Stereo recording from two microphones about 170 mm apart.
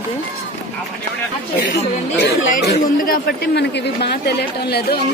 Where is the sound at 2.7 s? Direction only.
60° left (ahead or behind).